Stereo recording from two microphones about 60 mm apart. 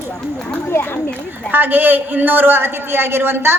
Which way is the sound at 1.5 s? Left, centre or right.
Right.